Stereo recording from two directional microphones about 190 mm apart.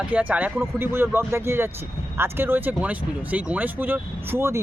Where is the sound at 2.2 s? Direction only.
10° right (ahead or behind).